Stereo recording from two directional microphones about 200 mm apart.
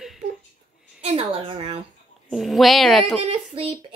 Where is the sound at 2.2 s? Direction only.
Centre (ahead or behind).